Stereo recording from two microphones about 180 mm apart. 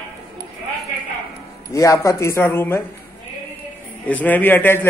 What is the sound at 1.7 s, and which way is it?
A man's voice, 20° left (ahead or behind).